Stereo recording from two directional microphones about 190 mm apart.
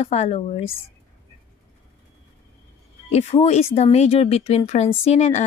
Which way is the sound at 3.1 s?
35° left (ahead or behind).